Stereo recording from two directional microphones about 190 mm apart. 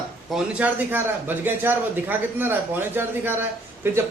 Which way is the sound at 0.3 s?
10° right (ahead or behind).